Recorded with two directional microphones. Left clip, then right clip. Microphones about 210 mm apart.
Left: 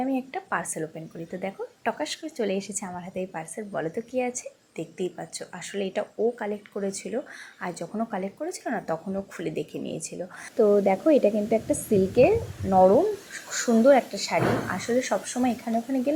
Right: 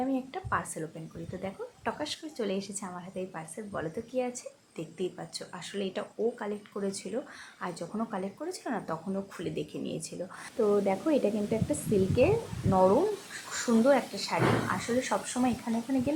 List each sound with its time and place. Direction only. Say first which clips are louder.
0.0 s a woman's voice: left 4 dB; 15° left (ahead or behind)